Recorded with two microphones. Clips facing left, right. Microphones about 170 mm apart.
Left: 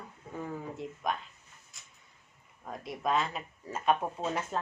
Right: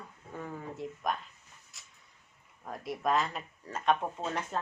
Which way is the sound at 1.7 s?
Centre (ahead or behind).